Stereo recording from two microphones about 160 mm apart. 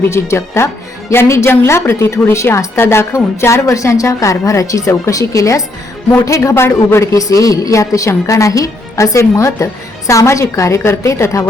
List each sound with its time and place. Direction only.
0.1 s a woman's voice: 15° left (ahead or behind)